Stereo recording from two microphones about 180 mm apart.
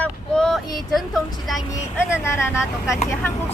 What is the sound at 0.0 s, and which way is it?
Child singing, 5° left (ahead or behind).